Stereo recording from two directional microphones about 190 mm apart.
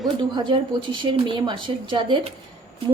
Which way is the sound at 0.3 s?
25° right (ahead or behind).